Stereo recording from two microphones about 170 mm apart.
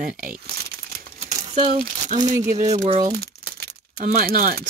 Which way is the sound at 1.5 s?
35° right (ahead or behind).